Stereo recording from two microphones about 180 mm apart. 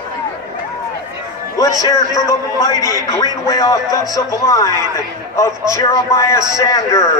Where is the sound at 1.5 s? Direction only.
20° left (ahead or behind).